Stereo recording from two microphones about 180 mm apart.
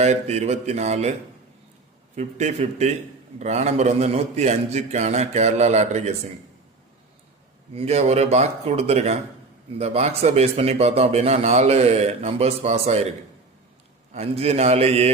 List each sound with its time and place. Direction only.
0.0 s a man's voice: 40° right (ahead or behind)
2.1 s a man's voice: 40° right (ahead or behind)
7.7 s a man's voice: 35° right (ahead or behind)